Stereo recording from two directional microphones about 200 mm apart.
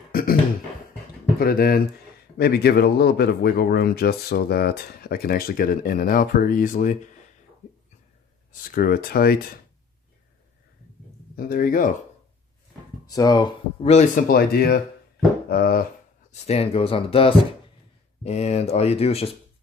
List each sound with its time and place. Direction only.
0.1 s a sound: 45° left (ahead or behind)
1.4 s a man's voice: 50° left (ahead or behind)
7.6 s a sound: 35° left (ahead or behind)
8.5 s a man's voice: 45° left (ahead or behind)
11.3 s a man's voice: 45° left (ahead or behind)
13.0 s speech: 20° left (ahead or behind)
13.8 s a man's voice: 40° left (ahead or behind)
15.4 s a sound: 50° left (ahead or behind)
16.4 s speech: 30° left (ahead or behind)